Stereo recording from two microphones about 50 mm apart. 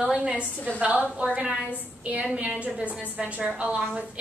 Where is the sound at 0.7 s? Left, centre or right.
Right.